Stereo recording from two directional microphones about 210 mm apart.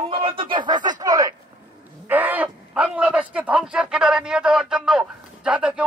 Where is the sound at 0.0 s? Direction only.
25° right (ahead or behind).